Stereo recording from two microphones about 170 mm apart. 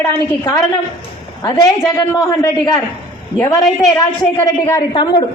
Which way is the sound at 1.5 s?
20° left (ahead or behind).